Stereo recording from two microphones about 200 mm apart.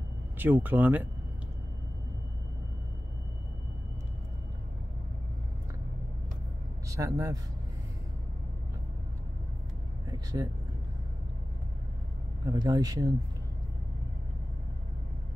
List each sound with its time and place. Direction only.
0.4 s speech: 10° right (ahead or behind)
6.9 s a man's voice: 15° right (ahead or behind)
10.0 s vehicle: 20° right (ahead or behind)
12.4 s speech: 20° right (ahead or behind)